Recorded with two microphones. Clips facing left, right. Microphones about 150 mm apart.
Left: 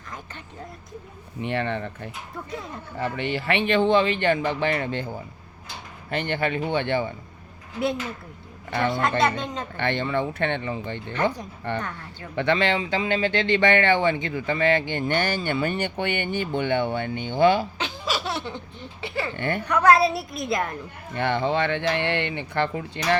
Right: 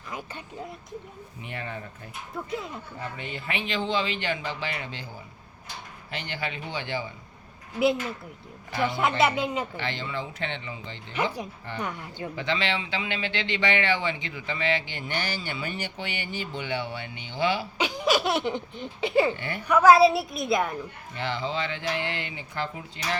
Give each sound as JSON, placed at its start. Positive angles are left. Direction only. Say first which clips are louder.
{"t": 1.4, "sound": "speech", "louder": "left 10 dB", "side_deg": 70}
{"t": 2.3, "sound": "a woman's voice", "louder": "right 4 dB", "side_deg": 0}
{"t": 3.0, "sound": "speech", "louder": "left 11 dB", "side_deg": 80}
{"t": 8.9, "sound": "speech", "louder": "left 1 dB", "side_deg": -5}
{"t": 9.7, "sound": "speech", "louder": "left 7 dB", "side_deg": 55}
{"t": 11.1, "sound": "speech", "louder": "left 3 dB", "side_deg": -10}
{"t": 12.4, "sound": "speech", "louder": "left 7 dB", "side_deg": 55}
{"t": 17.7, "sound": "speech", "louder": "right 4 dB", "side_deg": -15}
{"t": 19.4, "sound": "speech", "louder": "left 8 dB", "side_deg": 55}
{"t": 19.6, "sound": "a woman's voice", "louder": "right 2 dB", "side_deg": -5}
{"t": 21.2, "sound": "speech", "louder": "left 7 dB", "side_deg": 60}